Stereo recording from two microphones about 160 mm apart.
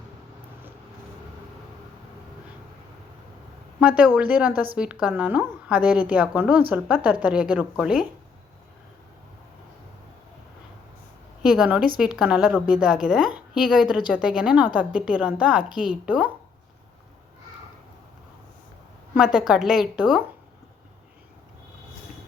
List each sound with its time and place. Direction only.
3.8 s a woman's voice: 10° right (ahead or behind)
11.4 s a woman's voice: 5° right (ahead or behind)
19.1 s a woman's voice: 5° right (ahead or behind)